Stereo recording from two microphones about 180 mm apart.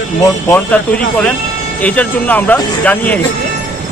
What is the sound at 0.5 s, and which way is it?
A man's voice, 10° left (ahead or behind).